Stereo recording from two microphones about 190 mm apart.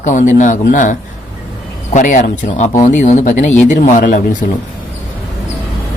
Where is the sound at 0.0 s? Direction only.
40° left (ahead or behind).